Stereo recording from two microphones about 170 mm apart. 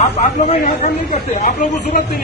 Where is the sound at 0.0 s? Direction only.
40° left (ahead or behind).